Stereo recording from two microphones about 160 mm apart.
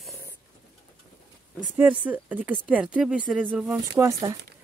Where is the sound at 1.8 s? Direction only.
10° right (ahead or behind).